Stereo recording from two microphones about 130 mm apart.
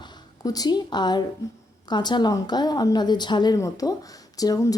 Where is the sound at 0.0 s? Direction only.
30° left (ahead or behind).